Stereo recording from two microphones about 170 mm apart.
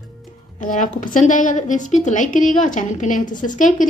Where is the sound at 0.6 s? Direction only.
50° left (ahead or behind).